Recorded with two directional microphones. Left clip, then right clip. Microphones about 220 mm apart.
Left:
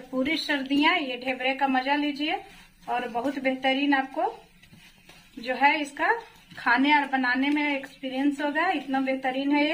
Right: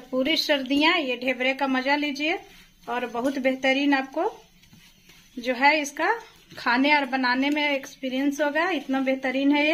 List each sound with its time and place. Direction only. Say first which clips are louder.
0.2 s a woman's voice: right 4 dB; 45° right (ahead or behind)
5.4 s a woman's voice: right 2 dB; 50° right (ahead or behind)